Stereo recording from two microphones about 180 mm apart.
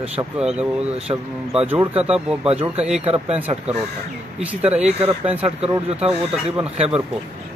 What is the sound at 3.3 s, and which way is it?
Speech, 10° right (ahead or behind).